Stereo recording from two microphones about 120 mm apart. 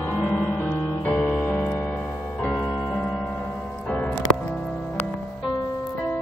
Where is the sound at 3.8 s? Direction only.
10° left (ahead or behind).